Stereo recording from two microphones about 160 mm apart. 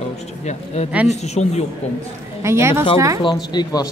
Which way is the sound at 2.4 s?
15° right (ahead or behind).